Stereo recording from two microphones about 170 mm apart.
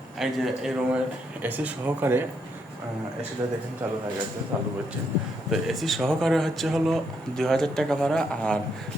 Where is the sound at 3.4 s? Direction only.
20° right (ahead or behind).